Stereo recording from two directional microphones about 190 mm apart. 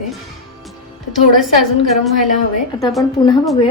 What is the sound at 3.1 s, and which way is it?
Speech, 25° left (ahead or behind).